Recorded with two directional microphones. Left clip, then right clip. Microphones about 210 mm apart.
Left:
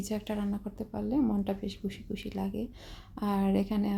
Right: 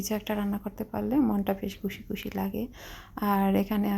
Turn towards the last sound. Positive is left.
turn(degrees=-15)  # may be behind; listen again after turning